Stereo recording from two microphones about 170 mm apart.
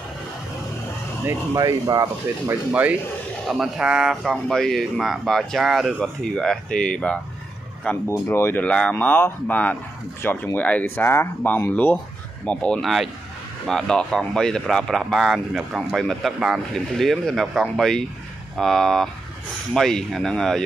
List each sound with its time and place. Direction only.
1.2 s speech: 20° right (ahead or behind)
2.7 s speech: 10° right (ahead or behind)